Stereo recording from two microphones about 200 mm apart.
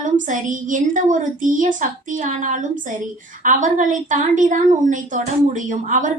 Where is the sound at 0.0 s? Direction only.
40° right (ahead or behind).